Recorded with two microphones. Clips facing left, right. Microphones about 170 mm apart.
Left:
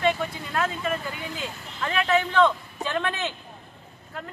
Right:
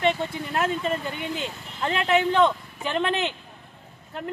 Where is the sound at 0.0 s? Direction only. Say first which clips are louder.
Right 1 dB; 25° right (ahead or behind).